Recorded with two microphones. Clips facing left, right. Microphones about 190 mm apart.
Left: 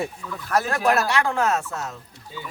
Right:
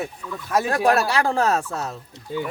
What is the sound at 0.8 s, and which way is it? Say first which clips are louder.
Speech: right 2 dB; 35° right (ahead or behind).